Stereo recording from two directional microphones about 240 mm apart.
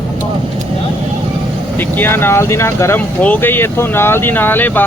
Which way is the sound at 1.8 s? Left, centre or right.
Centre.